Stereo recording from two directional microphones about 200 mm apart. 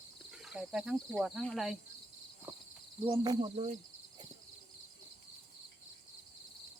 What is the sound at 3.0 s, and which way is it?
Speech, 25° right (ahead or behind).